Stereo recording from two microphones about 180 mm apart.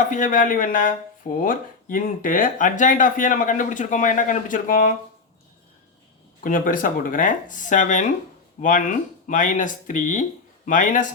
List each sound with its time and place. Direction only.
0.0 s speech: 45° left (ahead or behind)
6.4 s speech: 50° left (ahead or behind)